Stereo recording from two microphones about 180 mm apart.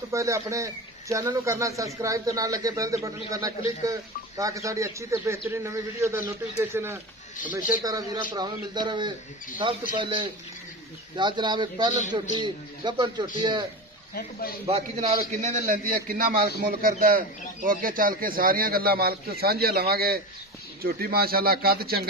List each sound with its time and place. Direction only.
0.1 s a man's voice: 15° right (ahead or behind)
14.7 s a man's voice: 35° right (ahead or behind); by 22.0 s 60° right (ahead or behind)